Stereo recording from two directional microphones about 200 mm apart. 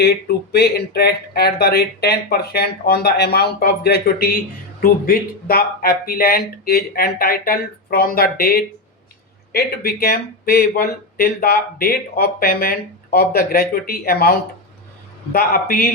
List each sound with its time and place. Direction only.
0.0 s speech: 50° left (ahead or behind)